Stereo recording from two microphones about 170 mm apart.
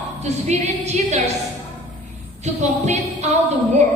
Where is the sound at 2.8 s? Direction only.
40° right (ahead or behind).